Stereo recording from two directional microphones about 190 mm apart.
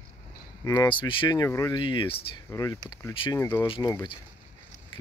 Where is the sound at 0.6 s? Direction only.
20° left (ahead or behind).